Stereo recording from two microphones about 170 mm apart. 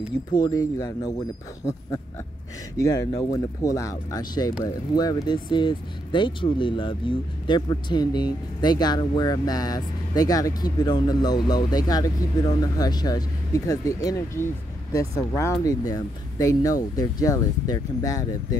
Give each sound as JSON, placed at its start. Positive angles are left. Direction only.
{"t": 0.3, "sound": "speech", "side_deg": 20}
{"t": 2.8, "sound": "speech", "side_deg": 20}